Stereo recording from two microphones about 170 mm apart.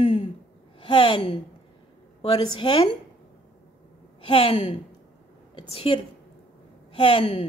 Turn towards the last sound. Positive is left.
turn(degrees=35)  # may be behind; listen again after turning